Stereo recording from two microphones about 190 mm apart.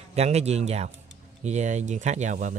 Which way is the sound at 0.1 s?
35° right (ahead or behind).